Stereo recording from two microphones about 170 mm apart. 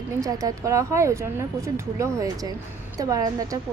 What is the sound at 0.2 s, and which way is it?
A woman's voice, 20° right (ahead or behind).